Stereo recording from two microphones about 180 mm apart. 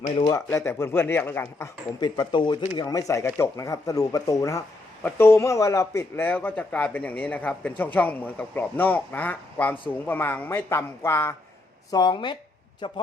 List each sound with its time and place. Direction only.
0.3 s speech: 15° left (ahead or behind)